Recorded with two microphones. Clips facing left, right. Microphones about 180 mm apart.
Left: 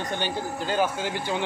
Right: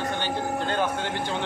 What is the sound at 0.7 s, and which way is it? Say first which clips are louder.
Speech: left 4 dB; 5° left (ahead or behind).